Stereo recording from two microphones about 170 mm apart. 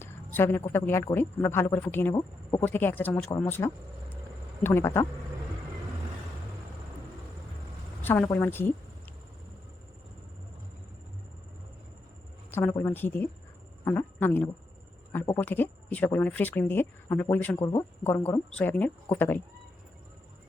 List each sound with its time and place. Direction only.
0.0 s a sound: 15° left (ahead or behind)
0.7 s speech: 15° left (ahead or behind)
3.3 s speech: 20° left (ahead or behind)
8.0 s speech: 10° left (ahead or behind)
12.5 s speech: 10° left (ahead or behind)